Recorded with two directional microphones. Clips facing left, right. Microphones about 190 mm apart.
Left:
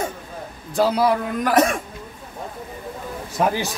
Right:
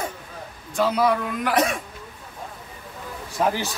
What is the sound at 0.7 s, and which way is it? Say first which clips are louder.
Speech: left 2 dB; 35° left (ahead or behind).